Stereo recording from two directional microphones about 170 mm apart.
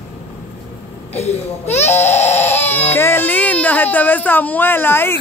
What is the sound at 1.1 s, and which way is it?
Speech, 40° left (ahead or behind).